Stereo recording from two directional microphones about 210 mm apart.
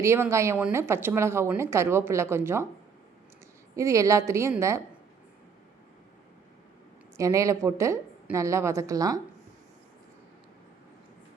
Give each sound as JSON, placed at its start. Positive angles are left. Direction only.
{"t": 0.0, "sound": "a woman's voice", "side_deg": -15}
{"t": 3.8, "sound": "a woman's voice", "side_deg": -15}
{"t": 7.2, "sound": "a woman's voice", "side_deg": -15}